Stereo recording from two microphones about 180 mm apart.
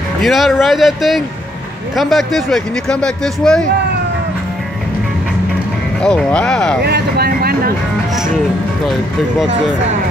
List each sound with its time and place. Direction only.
0.2 s speech: centre (ahead or behind)
6.0 s speech: 5° left (ahead or behind)
6.8 s speech: 60° right (ahead or behind)